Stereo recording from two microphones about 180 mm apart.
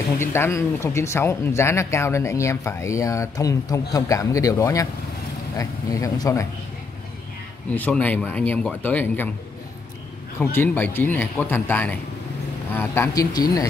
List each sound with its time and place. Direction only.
0.2 s speech: 15° left (ahead or behind)
7.7 s speech: 10° left (ahead or behind)
10.4 s speech: 10° left (ahead or behind)